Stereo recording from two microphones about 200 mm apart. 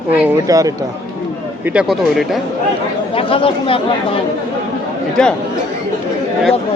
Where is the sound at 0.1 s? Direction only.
15° right (ahead or behind).